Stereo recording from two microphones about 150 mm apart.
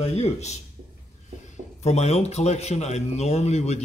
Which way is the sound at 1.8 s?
45° left (ahead or behind).